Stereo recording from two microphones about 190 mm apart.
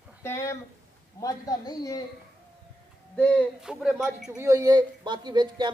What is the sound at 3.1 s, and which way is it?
Speech, 5° left (ahead or behind).